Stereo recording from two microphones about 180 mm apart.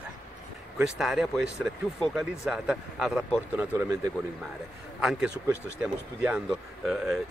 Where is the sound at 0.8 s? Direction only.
5° right (ahead or behind).